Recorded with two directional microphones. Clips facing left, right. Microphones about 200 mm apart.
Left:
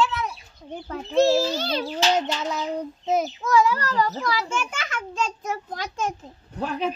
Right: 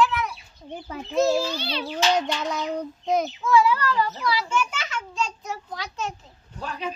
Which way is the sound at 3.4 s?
45° left (ahead or behind).